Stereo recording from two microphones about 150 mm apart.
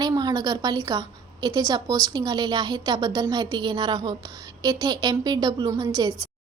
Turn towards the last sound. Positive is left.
turn(degrees=-25)  # may be behind; listen again after turning